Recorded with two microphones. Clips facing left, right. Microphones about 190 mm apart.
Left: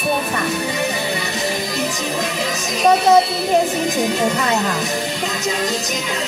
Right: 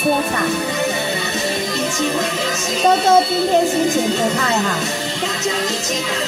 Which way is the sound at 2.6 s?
25° right (ahead or behind).